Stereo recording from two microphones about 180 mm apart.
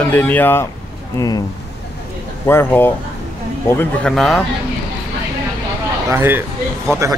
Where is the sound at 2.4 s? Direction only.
10° left (ahead or behind).